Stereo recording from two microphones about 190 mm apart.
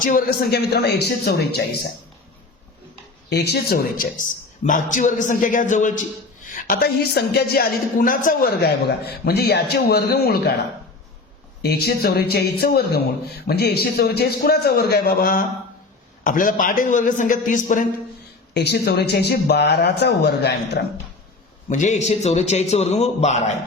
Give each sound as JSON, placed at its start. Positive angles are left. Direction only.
{"t": 0.0, "sound": "a woman's voice", "side_deg": 45}
{"t": 3.2, "sound": "a woman's voice", "side_deg": 60}
{"t": 11.6, "sound": "a woman's voice", "side_deg": 55}
{"t": 18.5, "sound": "a woman's voice", "side_deg": 60}
{"t": 21.7, "sound": "a man's voice", "side_deg": 40}